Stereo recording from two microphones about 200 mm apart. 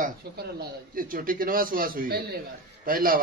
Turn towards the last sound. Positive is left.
turn(degrees=-45)  # may be behind; listen again after turning